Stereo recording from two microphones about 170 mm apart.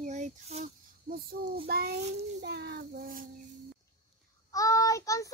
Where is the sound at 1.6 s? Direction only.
65° right (ahead or behind).